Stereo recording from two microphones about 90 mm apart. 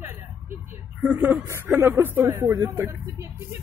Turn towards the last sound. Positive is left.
turn(degrees=-30)  # may be behind; listen again after turning